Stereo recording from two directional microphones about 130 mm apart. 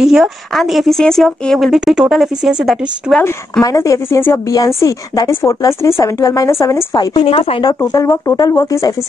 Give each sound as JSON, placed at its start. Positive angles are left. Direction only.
{"t": 0.0, "sound": "a woman's voice", "side_deg": 0}
{"t": 3.6, "sound": "a woman's voice", "side_deg": 25}
{"t": 7.2, "sound": "speech", "side_deg": 45}
{"t": 7.8, "sound": "a woman's voice", "side_deg": 25}